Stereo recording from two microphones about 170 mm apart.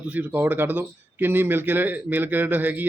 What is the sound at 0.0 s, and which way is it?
Speech, 10° right (ahead or behind).